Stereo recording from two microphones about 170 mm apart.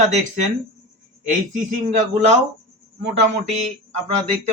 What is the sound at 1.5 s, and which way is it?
Speech, 45° right (ahead or behind).